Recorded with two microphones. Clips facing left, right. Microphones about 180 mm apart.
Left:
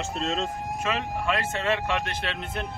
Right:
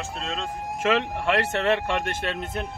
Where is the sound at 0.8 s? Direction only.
85° right; by 2.5 s 45° right (ahead or behind).